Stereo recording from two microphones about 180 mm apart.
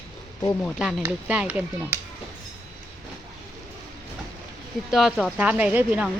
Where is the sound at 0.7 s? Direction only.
5° right (ahead or behind).